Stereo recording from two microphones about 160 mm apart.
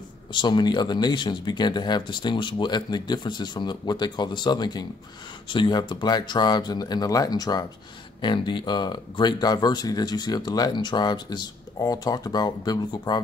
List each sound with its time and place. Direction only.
0.3 s speech: 30° left (ahead or behind)